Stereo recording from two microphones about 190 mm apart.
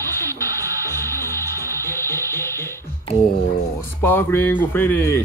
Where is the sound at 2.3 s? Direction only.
15° left (ahead or behind).